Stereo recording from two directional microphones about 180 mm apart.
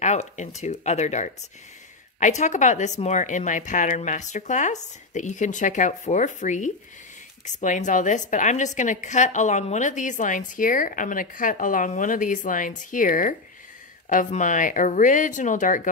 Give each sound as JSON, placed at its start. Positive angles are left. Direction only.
{"t": 0.0, "sound": "a woman's voice", "side_deg": 40}